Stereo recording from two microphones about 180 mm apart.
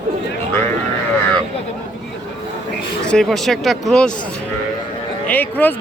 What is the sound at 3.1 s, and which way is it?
A man's voice, 5° left (ahead or behind).